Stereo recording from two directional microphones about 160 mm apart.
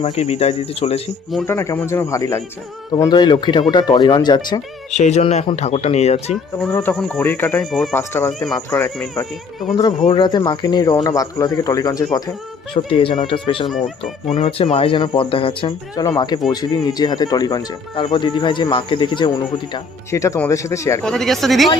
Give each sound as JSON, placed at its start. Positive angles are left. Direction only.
{"t": 0.0, "sound": "speech", "side_deg": 40}
{"t": 1.5, "sound": "speech", "side_deg": 15}
{"t": 4.9, "sound": "speech", "side_deg": 45}
{"t": 6.3, "sound": "speech", "side_deg": 5}
{"t": 7.6, "sound": "speech", "side_deg": 0}
{"t": 7.9, "sound": "speech", "side_deg": 15}
{"t": 10.1, "sound": "speech", "side_deg": 30}
{"t": 12.7, "sound": "speech", "side_deg": 35}
{"t": 13.7, "sound": "speech", "side_deg": 0}
{"t": 14.3, "sound": "speech", "side_deg": 40}
{"t": 21.0, "sound": "speech", "side_deg": 5}